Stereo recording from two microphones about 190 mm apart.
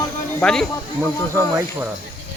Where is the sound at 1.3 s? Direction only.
15° right (ahead or behind).